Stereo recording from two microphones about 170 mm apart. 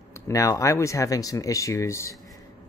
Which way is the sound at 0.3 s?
20° left (ahead or behind).